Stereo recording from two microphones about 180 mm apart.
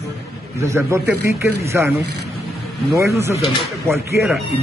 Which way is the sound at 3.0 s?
15° right (ahead or behind).